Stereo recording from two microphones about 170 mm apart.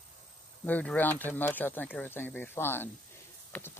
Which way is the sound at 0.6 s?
10° left (ahead or behind).